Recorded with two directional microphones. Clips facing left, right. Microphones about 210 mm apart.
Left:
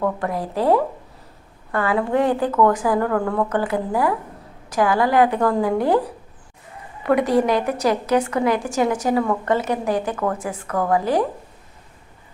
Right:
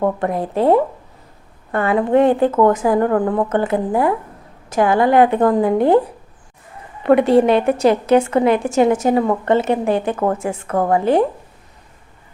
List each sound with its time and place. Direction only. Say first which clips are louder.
0.0 s a woman's voice: right 4 dB; 25° right (ahead or behind)
7.0 s a woman's voice: right 5 dB; 25° right (ahead or behind)